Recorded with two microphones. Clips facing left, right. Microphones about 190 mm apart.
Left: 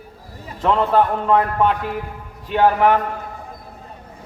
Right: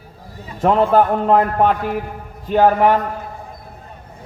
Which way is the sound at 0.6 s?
45° right (ahead or behind).